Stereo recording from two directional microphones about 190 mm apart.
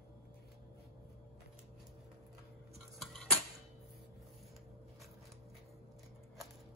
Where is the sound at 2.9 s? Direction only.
Centre (ahead or behind).